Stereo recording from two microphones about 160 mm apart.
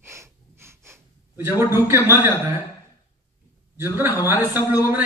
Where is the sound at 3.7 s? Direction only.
15° right (ahead or behind).